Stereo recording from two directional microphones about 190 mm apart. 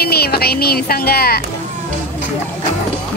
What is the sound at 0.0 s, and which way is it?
Speech, 55° left (ahead or behind).